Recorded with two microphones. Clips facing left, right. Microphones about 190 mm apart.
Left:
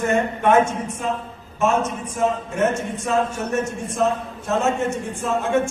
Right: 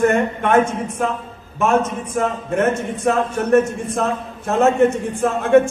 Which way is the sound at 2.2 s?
55° right (ahead or behind).